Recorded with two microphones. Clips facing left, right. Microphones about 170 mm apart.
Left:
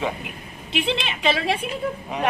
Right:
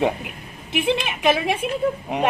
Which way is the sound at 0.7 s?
15° right (ahead or behind).